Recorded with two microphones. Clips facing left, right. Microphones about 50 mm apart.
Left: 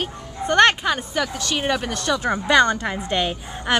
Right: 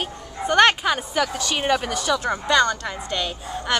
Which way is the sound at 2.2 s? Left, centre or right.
Centre.